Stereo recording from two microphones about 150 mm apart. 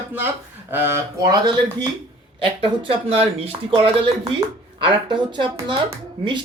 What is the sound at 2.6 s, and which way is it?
Speech, 40° right (ahead or behind).